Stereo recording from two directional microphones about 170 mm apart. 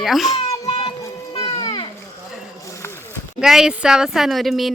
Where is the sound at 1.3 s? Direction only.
30° left (ahead or behind); by 3.2 s 15° left (ahead or behind).